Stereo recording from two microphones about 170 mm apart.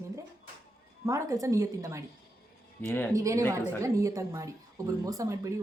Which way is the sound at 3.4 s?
10° left (ahead or behind).